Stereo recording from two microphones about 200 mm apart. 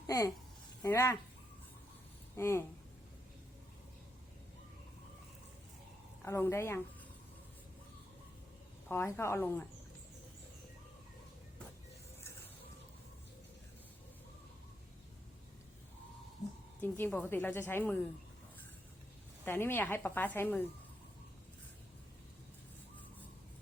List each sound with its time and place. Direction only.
0.8 s a woman's voice: 15° left (ahead or behind)
2.3 s a woman's voice: 15° left (ahead or behind)
6.2 s a woman's voice: 15° left (ahead or behind)
8.9 s a woman's voice: 10° left (ahead or behind)
16.8 s a woman's voice: 10° left (ahead or behind)
19.5 s a woman's voice: 10° left (ahead or behind)